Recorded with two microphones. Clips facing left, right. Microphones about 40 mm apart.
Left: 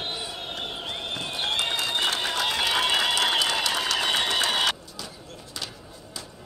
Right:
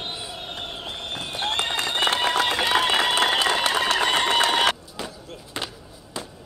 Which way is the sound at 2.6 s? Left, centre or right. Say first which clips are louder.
Right 3 dB; centre.